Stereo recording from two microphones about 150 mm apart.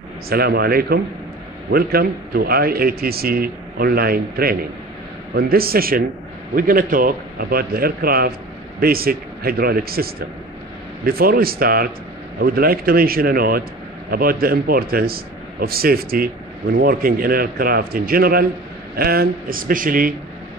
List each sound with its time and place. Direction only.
0.3 s a man's voice: 90° right
18.9 s speech: 90° right; by 20.2 s 65° right (ahead or behind)